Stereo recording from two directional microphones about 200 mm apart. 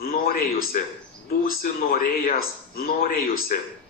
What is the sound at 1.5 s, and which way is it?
A man's voice, 45° left (ahead or behind).